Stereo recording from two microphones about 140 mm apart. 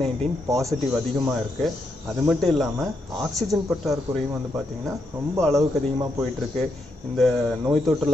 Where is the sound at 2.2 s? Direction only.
Centre (ahead or behind).